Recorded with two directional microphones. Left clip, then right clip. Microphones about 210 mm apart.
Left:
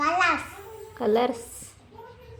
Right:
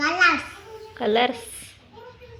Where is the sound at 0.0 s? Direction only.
5° left (ahead or behind).